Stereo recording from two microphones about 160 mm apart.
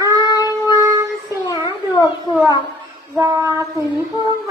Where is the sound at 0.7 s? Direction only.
20° right (ahead or behind).